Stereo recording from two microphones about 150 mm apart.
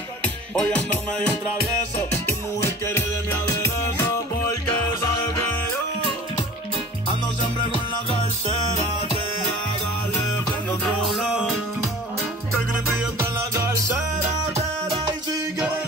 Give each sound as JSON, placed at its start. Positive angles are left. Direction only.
{"t": 0.2, "sound": "music", "side_deg": 5}
{"t": 2.2, "sound": "music", "side_deg": 15}
{"t": 10.8, "sound": "music", "side_deg": 0}
{"t": 13.6, "sound": "music", "side_deg": -20}